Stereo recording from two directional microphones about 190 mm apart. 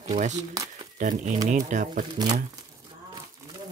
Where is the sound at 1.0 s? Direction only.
40° right (ahead or behind).